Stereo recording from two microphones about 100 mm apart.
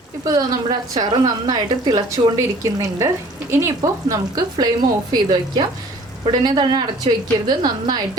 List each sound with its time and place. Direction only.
0.3 s a woman's voice: 40° right (ahead or behind)